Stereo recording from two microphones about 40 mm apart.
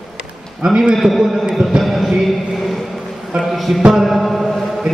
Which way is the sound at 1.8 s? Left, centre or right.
Centre.